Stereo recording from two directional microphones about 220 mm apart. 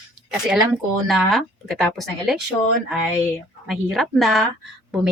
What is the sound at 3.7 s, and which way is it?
Speech, centre (ahead or behind).